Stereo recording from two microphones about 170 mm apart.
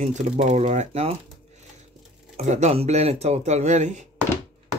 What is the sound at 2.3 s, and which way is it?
Speech, 45° right (ahead or behind).